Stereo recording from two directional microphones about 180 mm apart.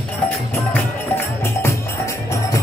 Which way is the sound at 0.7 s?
10° left (ahead or behind).